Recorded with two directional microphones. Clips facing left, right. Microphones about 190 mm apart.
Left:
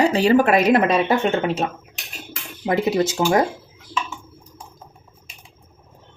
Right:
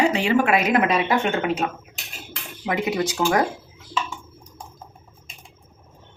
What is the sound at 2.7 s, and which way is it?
Speech, 30° left (ahead or behind).